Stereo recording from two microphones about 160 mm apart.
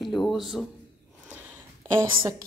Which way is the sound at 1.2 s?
10° right (ahead or behind).